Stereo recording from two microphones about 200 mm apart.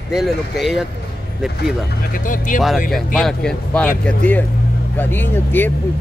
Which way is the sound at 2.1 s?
45° left (ahead or behind).